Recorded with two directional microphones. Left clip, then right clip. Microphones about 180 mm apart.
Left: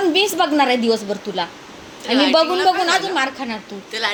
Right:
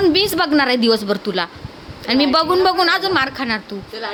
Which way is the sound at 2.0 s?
15° right (ahead or behind).